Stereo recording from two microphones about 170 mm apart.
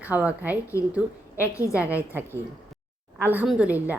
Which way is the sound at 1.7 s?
10° right (ahead or behind).